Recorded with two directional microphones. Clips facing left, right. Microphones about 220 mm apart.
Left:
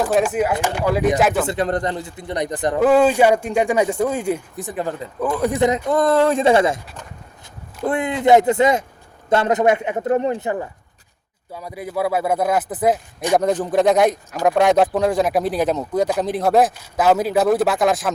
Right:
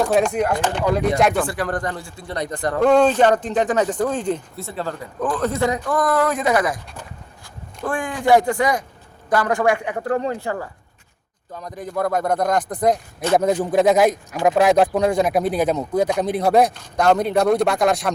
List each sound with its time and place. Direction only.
0.0 s speech: 5° left (ahead or behind)
1.5 s speech: 20° left (ahead or behind)
2.8 s speech: 5° left (ahead or behind); by 6.7 s 25° left (ahead or behind)
7.9 s speech: 20° left (ahead or behind)
11.5 s speech: 10° left (ahead or behind)